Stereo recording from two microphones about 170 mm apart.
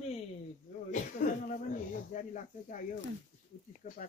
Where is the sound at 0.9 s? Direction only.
50° left (ahead or behind).